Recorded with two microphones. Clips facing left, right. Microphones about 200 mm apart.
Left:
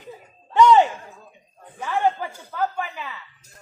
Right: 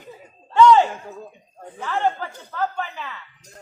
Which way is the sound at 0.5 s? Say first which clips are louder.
Right 1 dB; 15° left (ahead or behind).